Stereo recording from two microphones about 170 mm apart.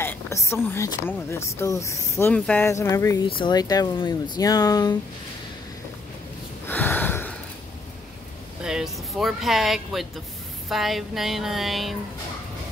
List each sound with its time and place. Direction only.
0.0 s speech: 15° left (ahead or behind)
3.3 s speech: 30° left (ahead or behind)
6.7 s a sound: 10° left (ahead or behind)
8.6 s speech: centre (ahead or behind)